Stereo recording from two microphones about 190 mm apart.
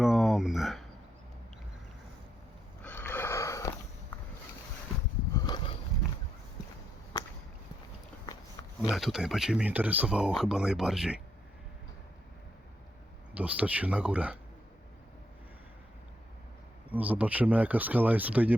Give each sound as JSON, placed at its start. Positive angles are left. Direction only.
{"t": 0.0, "sound": "a sound", "side_deg": 0}
{"t": 2.8, "sound": "sniff", "side_deg": 10}
{"t": 4.1, "sound": "boat", "side_deg": 10}
{"t": 5.4, "sound": "a sound", "side_deg": 20}
{"t": 8.9, "sound": "speech", "side_deg": 0}
{"t": 13.3, "sound": "speech", "side_deg": -5}
{"t": 16.9, "sound": "speech", "side_deg": -10}